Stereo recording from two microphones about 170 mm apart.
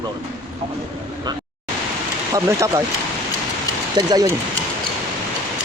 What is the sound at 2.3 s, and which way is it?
Speech, 15° right (ahead or behind).